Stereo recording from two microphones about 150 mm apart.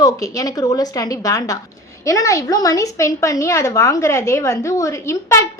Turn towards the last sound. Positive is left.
turn(degrees=20)  # may be behind; listen again after turning